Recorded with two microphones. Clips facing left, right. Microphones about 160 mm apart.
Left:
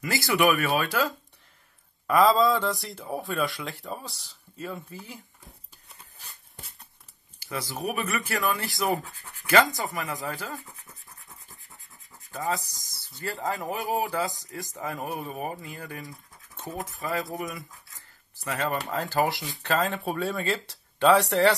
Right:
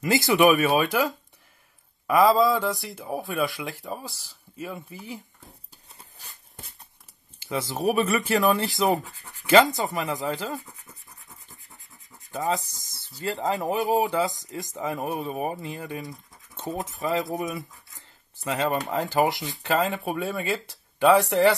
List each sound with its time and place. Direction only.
0.0 s speech: 20° right (ahead or behind)
7.3 s speech: 20° right (ahead or behind)
12.3 s speech: 20° right (ahead or behind)